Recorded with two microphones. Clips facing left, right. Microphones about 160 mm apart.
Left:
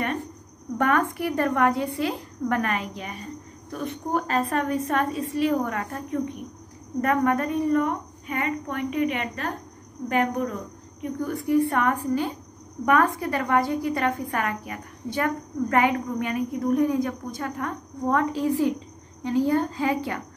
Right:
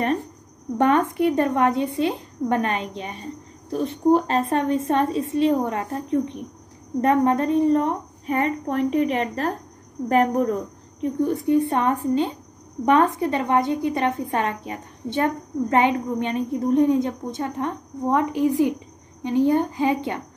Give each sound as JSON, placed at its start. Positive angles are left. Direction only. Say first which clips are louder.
{"t": 0.7, "sound": "a woman's voice", "louder": "right 4 dB", "side_deg": -25}